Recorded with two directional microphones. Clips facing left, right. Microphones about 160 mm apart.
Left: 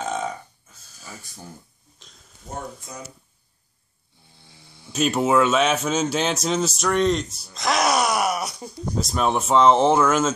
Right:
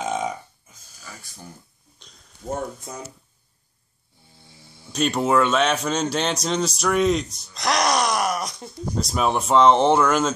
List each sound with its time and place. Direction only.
0.0 s burping: 10° right (ahead or behind)
2.0 s a sound: centre (ahead or behind)
2.4 s speech: 50° right (ahead or behind)
4.8 s a man's voice: 5° left (ahead or behind)
7.5 s groan: 5° left (ahead or behind)
8.9 s a man's voice: centre (ahead or behind)